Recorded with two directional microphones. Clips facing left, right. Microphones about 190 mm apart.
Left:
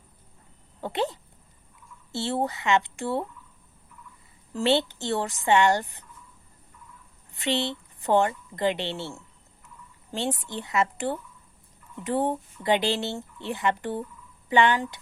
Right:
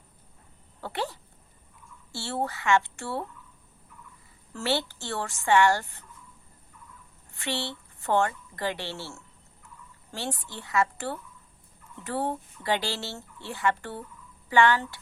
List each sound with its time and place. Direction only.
0.8 s speech: 20° left (ahead or behind)
4.5 s speech: 20° left (ahead or behind)
7.3 s speech: 20° left (ahead or behind)